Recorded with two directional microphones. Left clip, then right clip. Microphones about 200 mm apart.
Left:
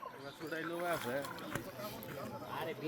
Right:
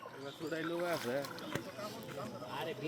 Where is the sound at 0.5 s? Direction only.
50° right (ahead or behind).